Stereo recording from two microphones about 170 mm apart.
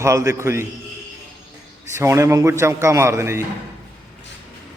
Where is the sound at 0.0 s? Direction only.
15° right (ahead or behind).